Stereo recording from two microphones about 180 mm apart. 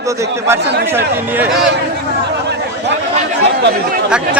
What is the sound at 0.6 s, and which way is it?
Speech, 70° right (ahead or behind).